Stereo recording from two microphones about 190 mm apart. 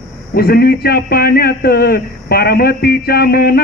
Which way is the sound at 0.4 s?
55° left (ahead or behind).